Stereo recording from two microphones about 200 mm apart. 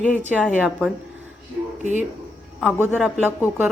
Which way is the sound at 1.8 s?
40° right (ahead or behind).